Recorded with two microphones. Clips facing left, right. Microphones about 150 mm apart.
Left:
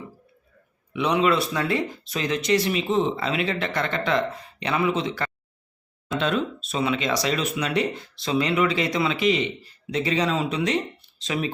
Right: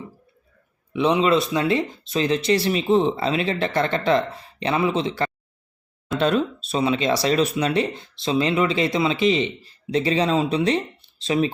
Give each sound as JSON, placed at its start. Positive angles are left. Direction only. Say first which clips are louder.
{"t": 0.9, "sound": "speech", "louder": "right 3 dB", "side_deg": -25}
{"t": 6.1, "sound": "speech", "louder": "right 4 dB", "side_deg": -40}